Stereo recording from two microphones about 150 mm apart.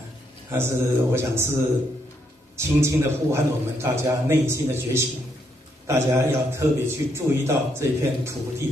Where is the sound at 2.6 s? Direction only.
20° right (ahead or behind).